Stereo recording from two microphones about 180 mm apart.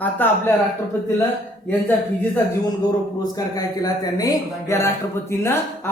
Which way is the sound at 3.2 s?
20° left (ahead or behind).